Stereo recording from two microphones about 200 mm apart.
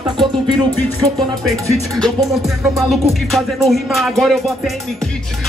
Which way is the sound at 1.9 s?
Centre (ahead or behind).